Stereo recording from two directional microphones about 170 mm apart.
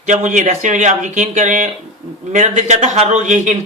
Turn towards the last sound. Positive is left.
turn(degrees=-45)  # may be behind; listen again after turning